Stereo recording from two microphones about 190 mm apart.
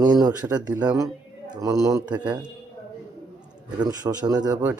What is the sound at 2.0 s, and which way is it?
Speech, 5° right (ahead or behind).